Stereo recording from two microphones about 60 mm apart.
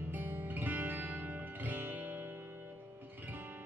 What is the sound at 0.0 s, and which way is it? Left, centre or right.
Music, right.